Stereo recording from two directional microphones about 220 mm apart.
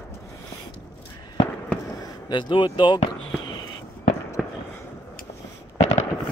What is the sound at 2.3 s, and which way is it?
Speech, 20° left (ahead or behind).